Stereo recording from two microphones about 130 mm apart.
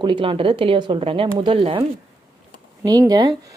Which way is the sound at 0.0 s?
40° right (ahead or behind).